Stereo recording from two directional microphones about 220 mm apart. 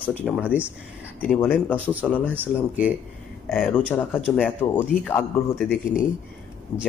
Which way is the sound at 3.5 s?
5° left (ahead or behind).